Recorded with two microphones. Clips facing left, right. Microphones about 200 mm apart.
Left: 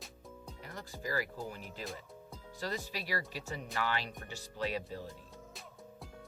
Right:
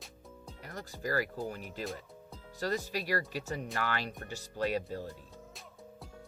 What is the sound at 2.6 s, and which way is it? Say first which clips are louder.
Speech: right 5 dB; 45° right (ahead or behind).